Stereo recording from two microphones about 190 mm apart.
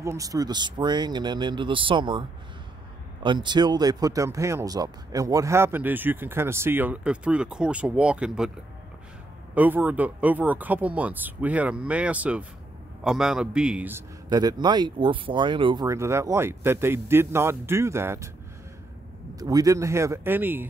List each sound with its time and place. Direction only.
0.0 s a man's voice: 15° right (ahead or behind)
9.6 s a man's voice: 10° right (ahead or behind)
19.3 s a man's voice: 20° right (ahead or behind)